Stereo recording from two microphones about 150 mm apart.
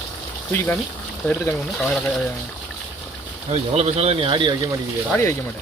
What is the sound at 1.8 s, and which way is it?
Speech, 10° left (ahead or behind).